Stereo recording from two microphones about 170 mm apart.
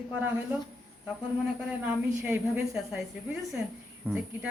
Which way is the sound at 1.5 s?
10° right (ahead or behind).